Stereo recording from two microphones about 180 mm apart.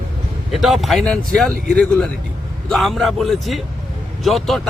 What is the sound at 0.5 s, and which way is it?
Speech, centre (ahead or behind).